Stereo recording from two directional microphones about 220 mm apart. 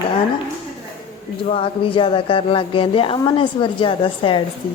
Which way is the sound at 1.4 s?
25° left (ahead or behind).